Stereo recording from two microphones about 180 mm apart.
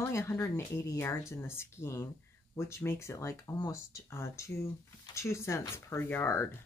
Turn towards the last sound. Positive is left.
turn(degrees=10)  # may be behind; listen again after turning